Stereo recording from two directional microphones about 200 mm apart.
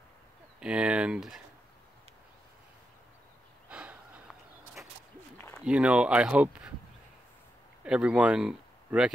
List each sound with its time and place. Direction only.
0.6 s speech: 5° right (ahead or behind)
3.6 s snort: 5° right (ahead or behind)
5.7 s speech: 5° right (ahead or behind)
7.8 s speech: 5° right (ahead or behind)